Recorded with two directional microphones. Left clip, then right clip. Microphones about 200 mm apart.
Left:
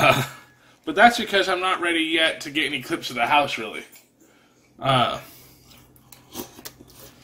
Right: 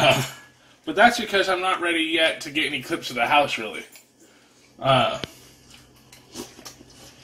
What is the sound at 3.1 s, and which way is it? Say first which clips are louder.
Speech: even; centre (ahead or behind).